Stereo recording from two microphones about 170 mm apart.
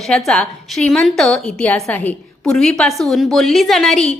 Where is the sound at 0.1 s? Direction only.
5° left (ahead or behind).